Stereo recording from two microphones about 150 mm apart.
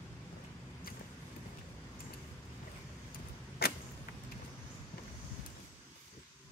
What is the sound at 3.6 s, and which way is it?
Arrow, 90° left.